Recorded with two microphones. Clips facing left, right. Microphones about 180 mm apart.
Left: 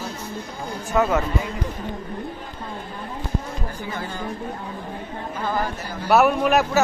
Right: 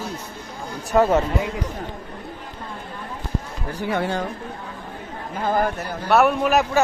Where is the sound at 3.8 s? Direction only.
70° right (ahead or behind).